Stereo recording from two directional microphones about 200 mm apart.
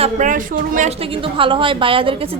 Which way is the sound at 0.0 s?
40° right (ahead or behind).